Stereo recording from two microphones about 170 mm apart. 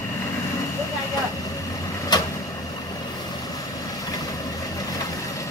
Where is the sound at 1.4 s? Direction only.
20° left (ahead or behind).